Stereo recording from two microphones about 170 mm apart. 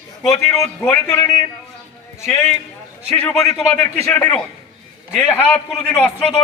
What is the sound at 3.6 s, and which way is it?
A man's voice, 5° left (ahead or behind).